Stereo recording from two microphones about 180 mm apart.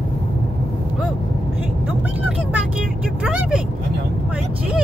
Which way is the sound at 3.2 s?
5° right (ahead or behind).